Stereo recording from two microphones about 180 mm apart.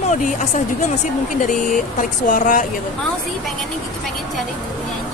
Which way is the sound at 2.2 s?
45° left (ahead or behind).